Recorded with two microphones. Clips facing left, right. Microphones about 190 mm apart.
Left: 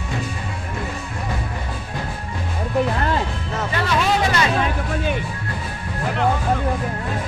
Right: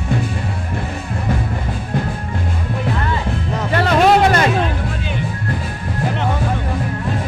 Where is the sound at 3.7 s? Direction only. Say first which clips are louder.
Right 8 dB; 50° right (ahead or behind).